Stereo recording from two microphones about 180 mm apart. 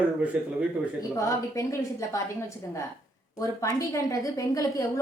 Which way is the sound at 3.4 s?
20° left (ahead or behind).